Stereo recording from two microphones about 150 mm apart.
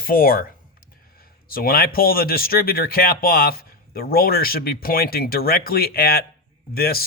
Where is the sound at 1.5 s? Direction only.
75° left (ahead or behind).